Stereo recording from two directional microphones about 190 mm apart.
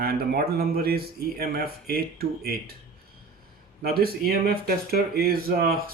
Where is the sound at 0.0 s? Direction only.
55° right (ahead or behind).